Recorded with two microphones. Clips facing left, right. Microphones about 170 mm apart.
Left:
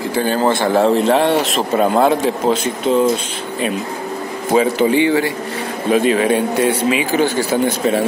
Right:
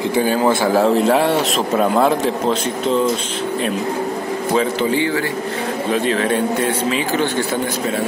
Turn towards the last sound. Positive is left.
turn(degrees=10)  # may be behind; listen again after turning